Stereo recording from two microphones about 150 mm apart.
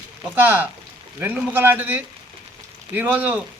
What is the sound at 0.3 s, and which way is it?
Speech, 10° right (ahead or behind).